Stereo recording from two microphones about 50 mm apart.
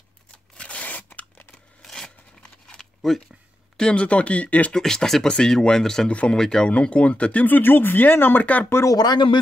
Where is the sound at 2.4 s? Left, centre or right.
Centre.